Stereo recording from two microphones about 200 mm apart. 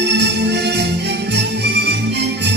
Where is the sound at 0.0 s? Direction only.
60° right (ahead or behind).